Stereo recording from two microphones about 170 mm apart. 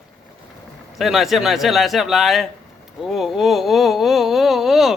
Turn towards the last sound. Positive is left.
turn(degrees=0)  # may be behind; listen again after turning